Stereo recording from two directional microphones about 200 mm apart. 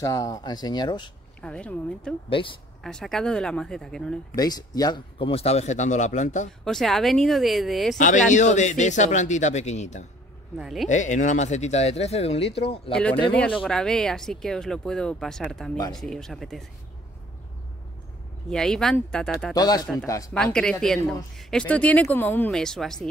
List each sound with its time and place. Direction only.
0.0 s speech: 15° left (ahead or behind)
1.4 s speech: 5° left (ahead or behind)
2.2 s speech: 25° left (ahead or behind)
2.8 s speech: centre (ahead or behind)
4.4 s speech: 20° left (ahead or behind); by 6.5 s 40° left (ahead or behind)
6.6 s speech: centre (ahead or behind)
8.3 s speech: 35° left (ahead or behind)
10.6 s speech: centre (ahead or behind)
10.9 s speech: 40° left (ahead or behind)
12.9 s speech: 5° left (ahead or behind)
18.5 s speech: 5° left (ahead or behind)
19.5 s speech: 20° left (ahead or behind)
20.3 s speech: 5° left (ahead or behind)